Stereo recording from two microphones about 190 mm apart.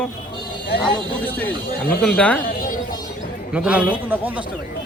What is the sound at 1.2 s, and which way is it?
Speech, 10° left (ahead or behind).